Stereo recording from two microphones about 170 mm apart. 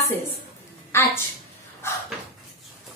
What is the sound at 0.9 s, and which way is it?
Speech, 15° left (ahead or behind).